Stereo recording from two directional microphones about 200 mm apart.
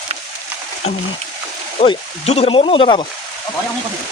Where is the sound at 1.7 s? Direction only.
30° left (ahead or behind).